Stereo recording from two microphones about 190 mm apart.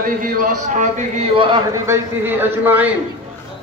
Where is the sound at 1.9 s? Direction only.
15° right (ahead or behind).